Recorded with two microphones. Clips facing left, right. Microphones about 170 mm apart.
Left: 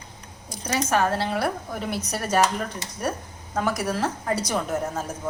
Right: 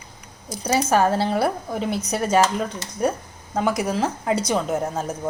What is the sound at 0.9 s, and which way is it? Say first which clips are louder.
Speech: right 3 dB; 30° right (ahead or behind).